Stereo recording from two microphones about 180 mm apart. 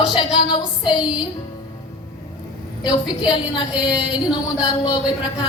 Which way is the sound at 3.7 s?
5° right (ahead or behind).